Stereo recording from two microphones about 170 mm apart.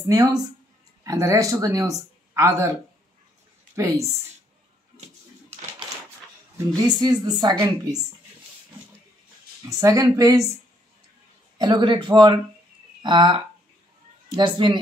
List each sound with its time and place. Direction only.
0.0 s speech: 20° right (ahead or behind)
3.7 s speech: 15° right (ahead or behind)
7.0 s speech: 25° right (ahead or behind)
9.7 s speech: 20° right (ahead or behind)
11.5 s speech: 25° right (ahead or behind)